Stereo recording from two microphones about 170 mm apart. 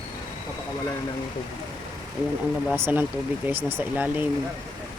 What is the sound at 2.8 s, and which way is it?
Speech, 10° right (ahead or behind).